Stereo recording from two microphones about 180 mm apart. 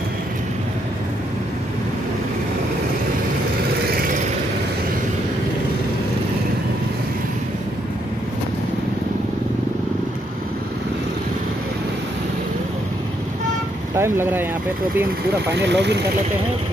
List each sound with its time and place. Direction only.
3.9 s vehicle: 55° right (ahead or behind)
13.9 s speech: 15° right (ahead or behind)
15.5 s speech: 70° right (ahead or behind)